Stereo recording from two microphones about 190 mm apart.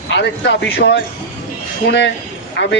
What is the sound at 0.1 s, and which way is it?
Speech, 70° left (ahead or behind).